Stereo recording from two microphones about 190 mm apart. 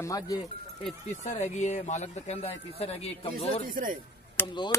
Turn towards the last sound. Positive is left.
turn(degrees=15)  # may be behind; listen again after turning